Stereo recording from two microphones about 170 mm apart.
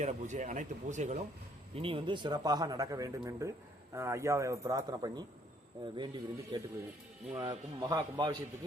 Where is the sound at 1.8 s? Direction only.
30° right (ahead or behind).